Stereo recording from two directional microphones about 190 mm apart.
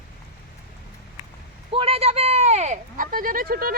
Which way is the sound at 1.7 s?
30° right (ahead or behind).